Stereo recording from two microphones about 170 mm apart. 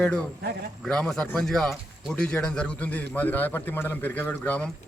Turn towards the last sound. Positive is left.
turn(degrees=5)  # may be behind; listen again after turning